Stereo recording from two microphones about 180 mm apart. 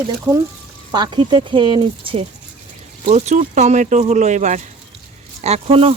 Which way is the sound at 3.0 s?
40° right (ahead or behind).